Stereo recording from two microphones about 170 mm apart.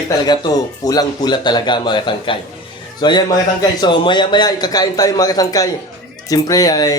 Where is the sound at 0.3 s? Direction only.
25° left (ahead or behind).